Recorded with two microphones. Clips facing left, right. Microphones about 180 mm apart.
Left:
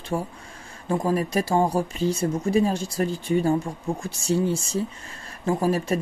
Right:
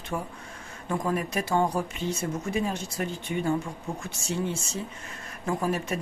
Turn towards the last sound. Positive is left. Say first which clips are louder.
# left 5 dB
turn(degrees=35)  # may be behind; listen again after turning